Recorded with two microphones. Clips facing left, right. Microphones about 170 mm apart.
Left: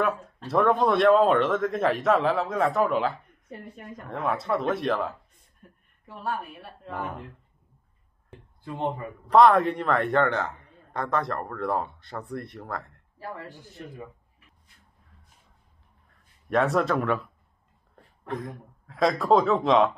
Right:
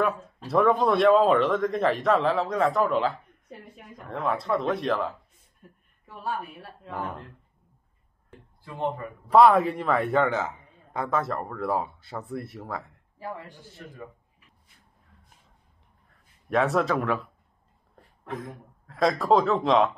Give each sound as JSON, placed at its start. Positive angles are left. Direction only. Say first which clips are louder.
{"t": 0.5, "sound": "a man's voice", "louder": "even", "side_deg": 0}
{"t": 8.7, "sound": "speech", "louder": "even", "side_deg": 20}
{"t": 9.3, "sound": "a man's voice", "louder": "even", "side_deg": -5}
{"t": 13.6, "sound": "speech", "louder": "left 3 dB", "side_deg": 20}
{"t": 16.4, "sound": "a man's voice", "louder": "even", "side_deg": 0}